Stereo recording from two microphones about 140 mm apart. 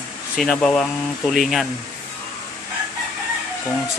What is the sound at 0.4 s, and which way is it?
Speech, 5° left (ahead or behind).